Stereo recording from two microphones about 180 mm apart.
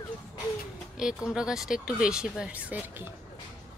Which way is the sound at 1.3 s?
5° right (ahead or behind).